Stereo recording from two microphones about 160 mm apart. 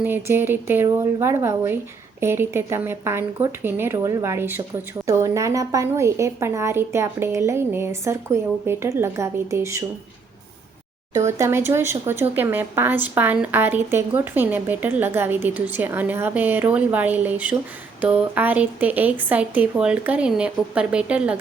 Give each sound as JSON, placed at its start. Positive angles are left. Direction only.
{"t": 0.0, "sound": "speech", "side_deg": -15}
{"t": 11.3, "sound": "speech", "side_deg": -15}